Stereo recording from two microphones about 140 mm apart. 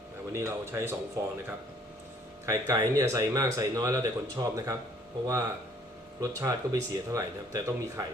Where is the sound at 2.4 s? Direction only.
20° right (ahead or behind).